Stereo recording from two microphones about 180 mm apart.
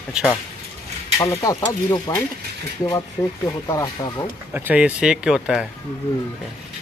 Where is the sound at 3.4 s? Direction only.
20° left (ahead or behind).